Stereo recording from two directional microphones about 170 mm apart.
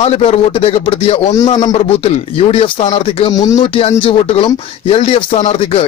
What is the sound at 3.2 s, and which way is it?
Speech, 20° left (ahead or behind).